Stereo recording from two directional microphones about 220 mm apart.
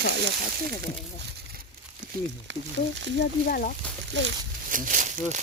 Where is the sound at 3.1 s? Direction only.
40° left (ahead or behind).